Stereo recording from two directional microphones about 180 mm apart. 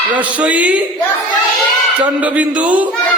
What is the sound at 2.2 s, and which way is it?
Speech, 10° right (ahead or behind).